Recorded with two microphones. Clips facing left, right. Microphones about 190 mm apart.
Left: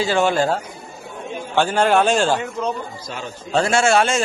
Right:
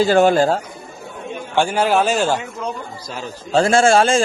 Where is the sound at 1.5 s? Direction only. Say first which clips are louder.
Even; 10° right (ahead or behind).